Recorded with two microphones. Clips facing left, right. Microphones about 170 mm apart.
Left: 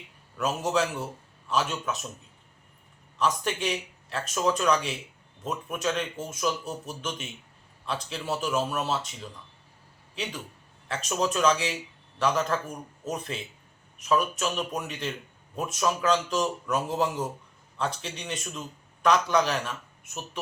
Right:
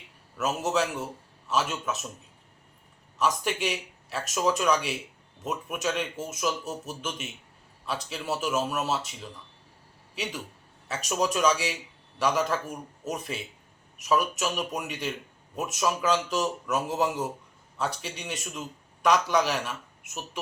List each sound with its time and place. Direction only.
0.3 s a man's voice: 5° right (ahead or behind)
3.2 s speech: 10° right (ahead or behind)
10.8 s speech: 10° right (ahead or behind)